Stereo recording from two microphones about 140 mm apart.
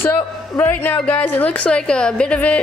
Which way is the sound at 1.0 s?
10° left (ahead or behind).